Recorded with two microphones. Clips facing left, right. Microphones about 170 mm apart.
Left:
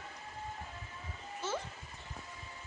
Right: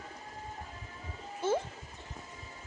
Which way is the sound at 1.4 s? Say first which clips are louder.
Right 8 dB; 55° right (ahead or behind).